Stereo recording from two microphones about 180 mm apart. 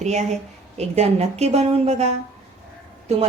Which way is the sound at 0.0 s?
40° right (ahead or behind).